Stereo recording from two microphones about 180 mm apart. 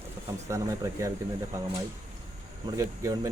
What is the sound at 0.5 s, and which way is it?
Speech, 15° right (ahead or behind).